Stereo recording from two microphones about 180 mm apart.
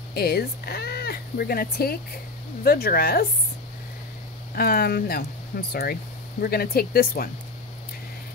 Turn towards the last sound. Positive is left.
turn(degrees=55)  # may be behind; listen again after turning